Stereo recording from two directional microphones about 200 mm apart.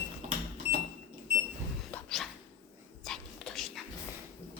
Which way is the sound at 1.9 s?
Centre (ahead or behind).